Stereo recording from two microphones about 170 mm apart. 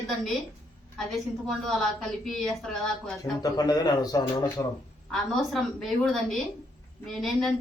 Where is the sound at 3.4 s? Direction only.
25° left (ahead or behind).